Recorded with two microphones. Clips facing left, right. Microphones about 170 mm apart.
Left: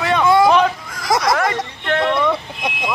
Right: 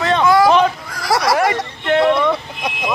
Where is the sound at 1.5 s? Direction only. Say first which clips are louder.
Right 3 dB; 15° right (ahead or behind).